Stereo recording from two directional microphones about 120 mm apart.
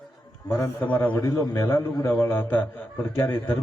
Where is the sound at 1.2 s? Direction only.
25° left (ahead or behind).